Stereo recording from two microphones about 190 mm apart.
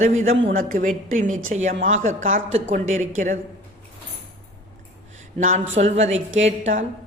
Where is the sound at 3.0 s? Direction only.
45° right (ahead or behind).